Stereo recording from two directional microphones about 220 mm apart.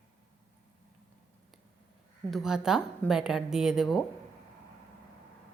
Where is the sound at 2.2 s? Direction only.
Centre (ahead or behind).